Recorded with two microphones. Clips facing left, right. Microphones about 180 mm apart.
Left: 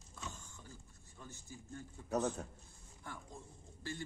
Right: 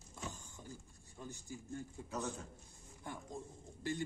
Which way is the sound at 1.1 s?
15° right (ahead or behind).